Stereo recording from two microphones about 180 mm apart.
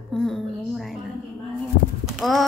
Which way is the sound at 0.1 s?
Centre (ahead or behind).